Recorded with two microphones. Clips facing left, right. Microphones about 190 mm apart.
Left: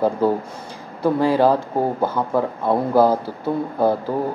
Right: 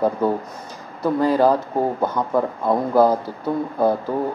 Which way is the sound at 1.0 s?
10° left (ahead or behind).